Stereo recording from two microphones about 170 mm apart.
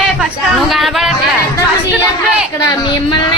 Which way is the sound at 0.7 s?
Centre (ahead or behind).